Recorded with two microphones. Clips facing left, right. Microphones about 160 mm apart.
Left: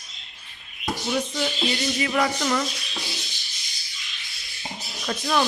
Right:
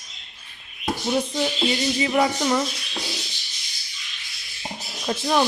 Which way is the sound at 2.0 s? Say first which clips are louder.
Right 3 dB; 20° right (ahead or behind).